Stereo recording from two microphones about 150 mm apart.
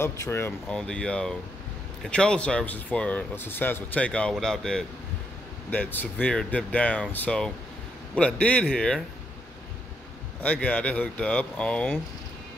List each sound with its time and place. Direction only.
0.0 s speech: 15° left (ahead or behind)
0.7 s speech: 5° left (ahead or behind)
10.4 s speech: 10° left (ahead or behind)